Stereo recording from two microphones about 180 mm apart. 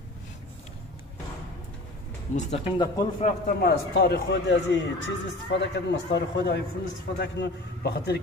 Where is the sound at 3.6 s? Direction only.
65° left (ahead or behind).